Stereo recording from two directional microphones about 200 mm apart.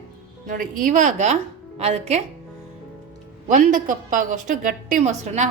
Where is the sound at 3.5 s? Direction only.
40° right (ahead or behind).